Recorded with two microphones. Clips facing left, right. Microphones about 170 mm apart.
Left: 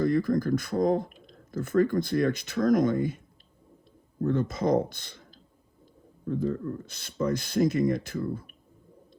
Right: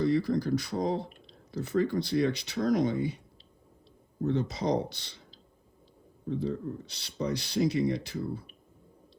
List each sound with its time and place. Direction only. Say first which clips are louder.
0.0 s speech: left 2 dB; 50° left (ahead or behind)
4.3 s speech: left 3 dB; 50° left (ahead or behind)